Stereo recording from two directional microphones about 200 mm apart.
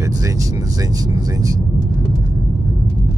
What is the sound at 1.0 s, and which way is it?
Speech, 20° right (ahead or behind).